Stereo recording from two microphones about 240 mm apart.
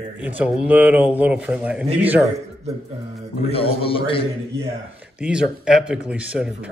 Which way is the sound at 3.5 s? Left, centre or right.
Left.